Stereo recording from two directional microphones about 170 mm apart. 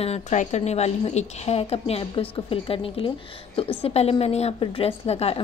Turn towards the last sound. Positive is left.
turn(degrees=35)  # may be behind; listen again after turning